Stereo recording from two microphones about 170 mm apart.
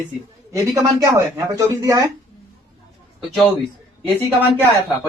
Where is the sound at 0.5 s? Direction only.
20° right (ahead or behind).